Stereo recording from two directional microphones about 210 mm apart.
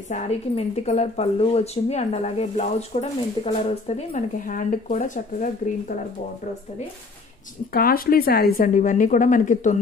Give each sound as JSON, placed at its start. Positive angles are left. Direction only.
{"t": 0.1, "sound": "speech", "side_deg": 30}
{"t": 7.7, "sound": "speech", "side_deg": 45}